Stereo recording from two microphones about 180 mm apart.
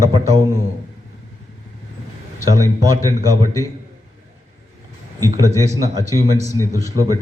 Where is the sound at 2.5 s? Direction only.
20° right (ahead or behind).